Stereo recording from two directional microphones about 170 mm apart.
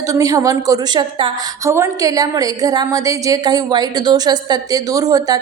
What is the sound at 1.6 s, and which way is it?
A woman's voice, 15° right (ahead or behind).